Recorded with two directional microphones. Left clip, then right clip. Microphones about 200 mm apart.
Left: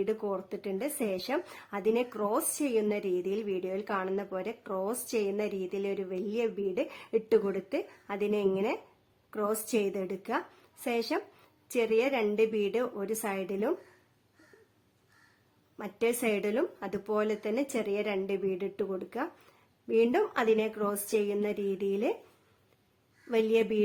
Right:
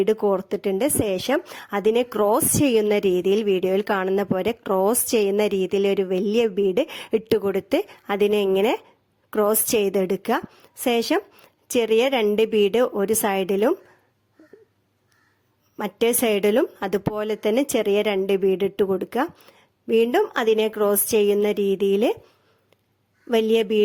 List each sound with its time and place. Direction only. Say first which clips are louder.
0.0 s a woman's voice: right 12 dB; 40° right (ahead or behind)
15.8 s a woman's voice: right 9 dB; 45° right (ahead or behind)
23.3 s a woman's voice: right 8 dB; 40° right (ahead or behind)